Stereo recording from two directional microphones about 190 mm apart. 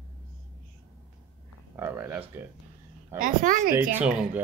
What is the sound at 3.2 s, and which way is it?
Speech, 45° right (ahead or behind).